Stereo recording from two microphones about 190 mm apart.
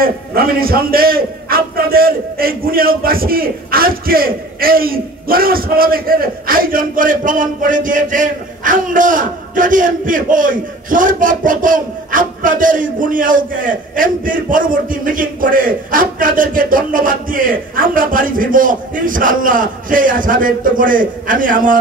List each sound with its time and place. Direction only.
0.0 s a man's voice: 50° right (ahead or behind)